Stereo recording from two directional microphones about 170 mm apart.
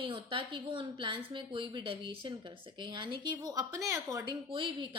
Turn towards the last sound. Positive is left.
turn(degrees=-30)  # may be behind; listen again after turning